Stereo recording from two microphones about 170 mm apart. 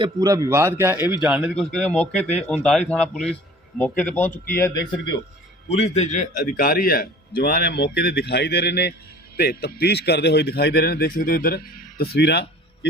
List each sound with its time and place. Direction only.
0.0 s a man's voice: 20° right (ahead or behind); by 4.9 s 20° left (ahead or behind)
5.6 s a man's voice: 40° left (ahead or behind); by 12.9 s 75° left (ahead or behind)